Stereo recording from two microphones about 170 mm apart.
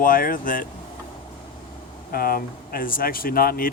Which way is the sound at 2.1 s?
60° left (ahead or behind).